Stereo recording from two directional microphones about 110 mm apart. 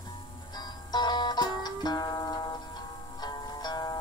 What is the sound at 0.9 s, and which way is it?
Music, 40° left (ahead or behind).